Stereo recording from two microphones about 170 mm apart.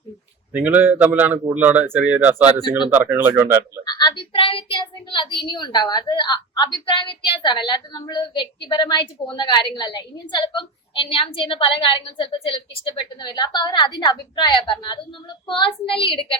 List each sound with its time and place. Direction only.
0.5 s a man's voice: 10° right (ahead or behind)
3.8 s a woman's voice: 25° left (ahead or behind)